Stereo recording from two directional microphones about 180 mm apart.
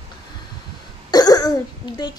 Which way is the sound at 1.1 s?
20° left (ahead or behind).